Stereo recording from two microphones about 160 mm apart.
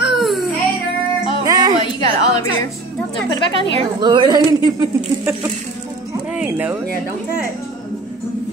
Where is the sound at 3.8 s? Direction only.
30° right (ahead or behind).